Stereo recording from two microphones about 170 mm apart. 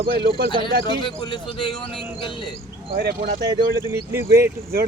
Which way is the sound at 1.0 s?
25° left (ahead or behind).